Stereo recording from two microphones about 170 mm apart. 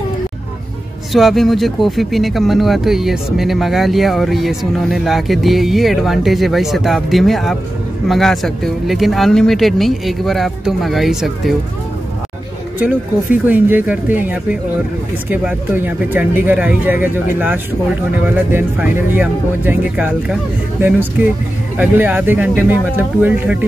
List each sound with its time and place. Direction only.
1.1 s speech: centre (ahead or behind)
12.7 s speech: 10° right (ahead or behind)